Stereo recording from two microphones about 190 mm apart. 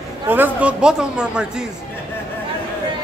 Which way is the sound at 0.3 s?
10° right (ahead or behind).